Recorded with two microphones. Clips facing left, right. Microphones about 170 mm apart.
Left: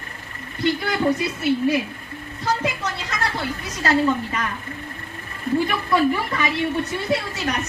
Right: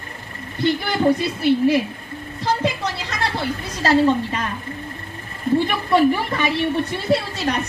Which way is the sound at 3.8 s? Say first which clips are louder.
Right 3 dB; 30° right (ahead or behind).